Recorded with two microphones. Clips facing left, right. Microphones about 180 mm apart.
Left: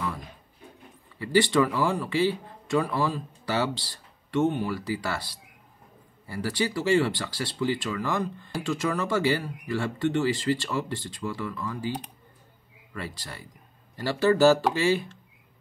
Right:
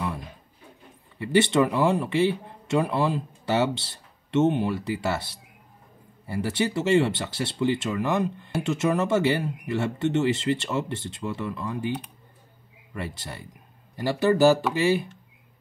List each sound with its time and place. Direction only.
1.2 s speech: 20° right (ahead or behind)
12.9 s speech: 20° right (ahead or behind)